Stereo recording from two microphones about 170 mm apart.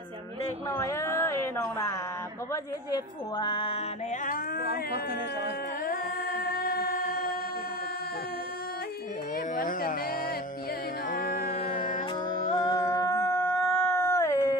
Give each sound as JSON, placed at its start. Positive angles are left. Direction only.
{"t": 0.7, "sound": "a sound", "side_deg": 15}
{"t": 2.5, "sound": "a woman's voice", "side_deg": 25}
{"t": 4.3, "sound": "music", "side_deg": 65}
{"t": 9.6, "sound": "speech", "side_deg": 55}
{"t": 11.1, "sound": "music", "side_deg": 55}
{"t": 12.4, "sound": "a sound", "side_deg": 20}